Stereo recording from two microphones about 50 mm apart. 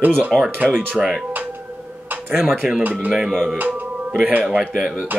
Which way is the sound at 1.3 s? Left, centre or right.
Right.